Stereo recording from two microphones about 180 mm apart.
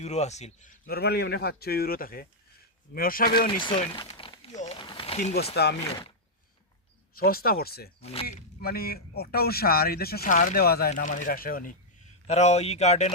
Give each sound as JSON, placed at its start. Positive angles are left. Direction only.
{"t": 0.0, "sound": "speech", "side_deg": 40}
{"t": 0.9, "sound": "speech", "side_deg": 60}
{"t": 3.6, "sound": "a sound", "side_deg": 30}
{"t": 4.5, "sound": "a sound", "side_deg": 40}
{"t": 4.8, "sound": "a sound", "side_deg": 30}
{"t": 5.6, "sound": "speech", "side_deg": 65}
{"t": 7.2, "sound": "speech", "side_deg": 55}
{"t": 8.0, "sound": "speech", "side_deg": 35}
{"t": 8.6, "sound": "speech", "side_deg": 60}
{"t": 12.3, "sound": "speech", "side_deg": 40}